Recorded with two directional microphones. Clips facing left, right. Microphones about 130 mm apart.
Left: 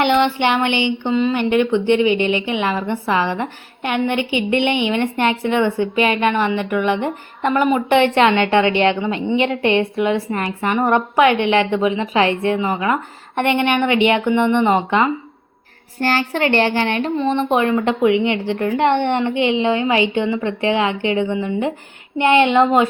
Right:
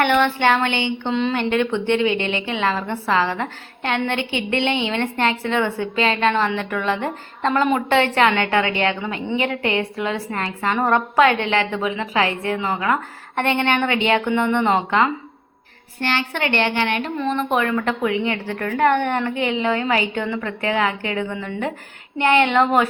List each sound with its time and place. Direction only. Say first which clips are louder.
0.0 s a woman's voice: left 2 dB; 15° left (ahead or behind)
16.0 s a woman's voice: left 5 dB; 40° left (ahead or behind); by 22.9 s 20° left (ahead or behind)